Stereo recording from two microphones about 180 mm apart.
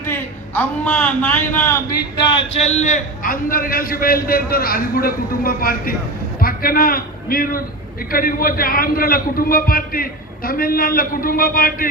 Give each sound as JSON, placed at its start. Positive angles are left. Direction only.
{"t": 0.0, "sound": "a man's voice", "side_deg": 10}
{"t": 2.5, "sound": "a man's voice", "side_deg": 35}